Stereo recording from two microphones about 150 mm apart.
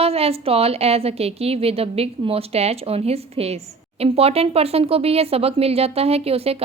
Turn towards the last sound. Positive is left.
turn(degrees=-40)  # may be behind; listen again after turning